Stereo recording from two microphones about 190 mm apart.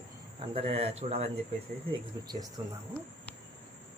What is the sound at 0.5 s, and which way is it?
Speech, 30° right (ahead or behind).